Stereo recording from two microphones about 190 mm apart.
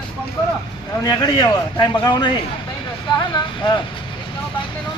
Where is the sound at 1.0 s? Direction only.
20° left (ahead or behind).